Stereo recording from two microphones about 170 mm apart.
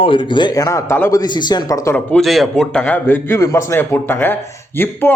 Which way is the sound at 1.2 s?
25° left (ahead or behind).